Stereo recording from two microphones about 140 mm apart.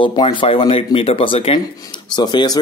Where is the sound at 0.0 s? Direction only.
35° left (ahead or behind).